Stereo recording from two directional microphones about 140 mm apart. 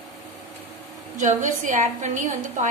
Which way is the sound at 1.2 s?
65° right (ahead or behind).